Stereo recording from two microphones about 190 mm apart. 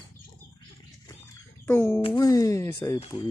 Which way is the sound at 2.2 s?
20° left (ahead or behind).